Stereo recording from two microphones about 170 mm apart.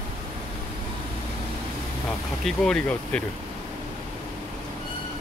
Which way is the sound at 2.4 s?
5° left (ahead or behind).